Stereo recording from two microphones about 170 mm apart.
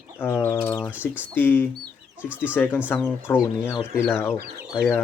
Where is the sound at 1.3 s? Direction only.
10° left (ahead or behind).